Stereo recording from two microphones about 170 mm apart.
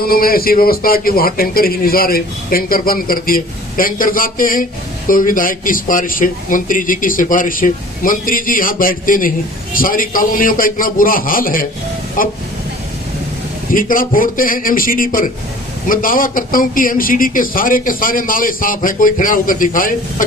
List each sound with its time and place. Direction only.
0.0 s a man's voice: 60° left (ahead or behind)
13.7 s a man's voice: 55° left (ahead or behind)